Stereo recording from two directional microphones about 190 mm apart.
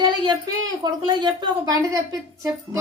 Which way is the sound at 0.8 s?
25° right (ahead or behind).